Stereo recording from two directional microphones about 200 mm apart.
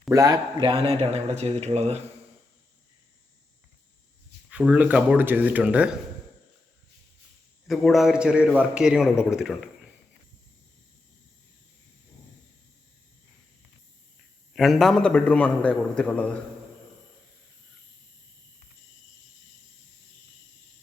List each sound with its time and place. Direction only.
0.1 s a man's voice: 15° right (ahead or behind); by 2.0 s 35° right (ahead or behind)
4.4 s speech: 5° right (ahead or behind)
7.7 s a man's voice: centre (ahead or behind)
14.5 s a man's voice: centre (ahead or behind)